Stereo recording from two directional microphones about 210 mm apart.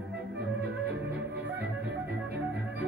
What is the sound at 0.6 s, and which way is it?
Music, 50° right (ahead or behind).